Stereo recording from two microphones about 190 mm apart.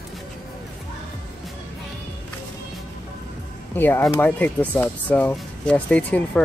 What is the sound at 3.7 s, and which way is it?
Speech, 10° left (ahead or behind).